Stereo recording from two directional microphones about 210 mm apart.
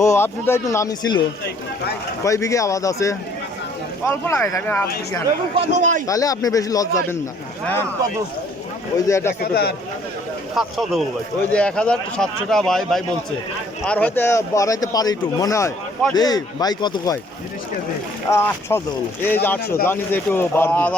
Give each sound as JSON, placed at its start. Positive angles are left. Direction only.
{"t": 0.0, "sound": "speech", "side_deg": 10}
{"t": 2.2, "sound": "speech", "side_deg": 15}
{"t": 5.5, "sound": "a man's voice", "side_deg": -35}
{"t": 6.1, "sound": "speech", "side_deg": 15}
{"t": 9.0, "sound": "speech", "side_deg": 15}
{"t": 9.4, "sound": "speech", "side_deg": 50}
{"t": 10.5, "sound": "speech", "side_deg": 0}
{"t": 18.3, "sound": "speech", "side_deg": 10}